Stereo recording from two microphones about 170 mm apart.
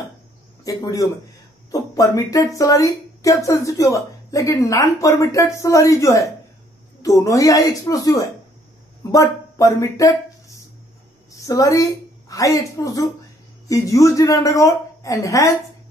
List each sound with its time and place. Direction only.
0.7 s speech: 20° left (ahead or behind)
11.3 s speech: 20° left (ahead or behind)